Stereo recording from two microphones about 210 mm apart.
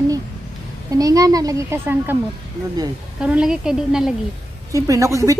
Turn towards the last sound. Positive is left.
turn(degrees=-15)  # may be behind; listen again after turning